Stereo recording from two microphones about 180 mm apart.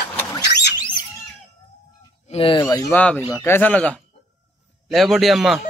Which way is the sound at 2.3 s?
30° left (ahead or behind).